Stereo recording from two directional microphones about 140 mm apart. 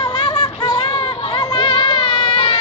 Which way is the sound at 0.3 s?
30° left (ahead or behind).